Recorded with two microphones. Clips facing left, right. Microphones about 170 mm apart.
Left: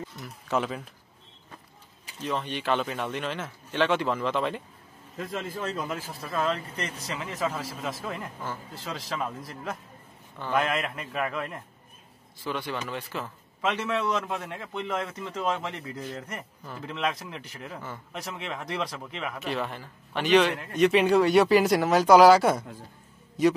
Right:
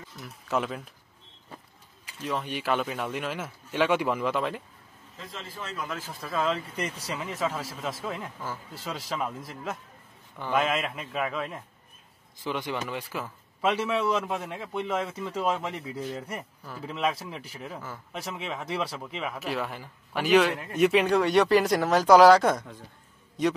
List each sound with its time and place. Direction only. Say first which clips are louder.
0.2 s a man's voice: even; centre (ahead or behind)
2.2 s speech: left 1 dB; 5° right (ahead or behind)
5.1 s a man's voice: left 8 dB; 50° left (ahead or behind)
5.9 s a man's voice: even; centre (ahead or behind)
12.4 s a man's voice: right 1 dB; 15° right (ahead or behind); by 23.5 s 5° left (ahead or behind)